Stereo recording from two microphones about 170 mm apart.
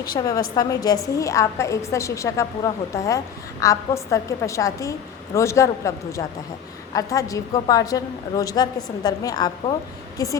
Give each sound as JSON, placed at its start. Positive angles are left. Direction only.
{"t": 0.1, "sound": "a woman's voice", "side_deg": 25}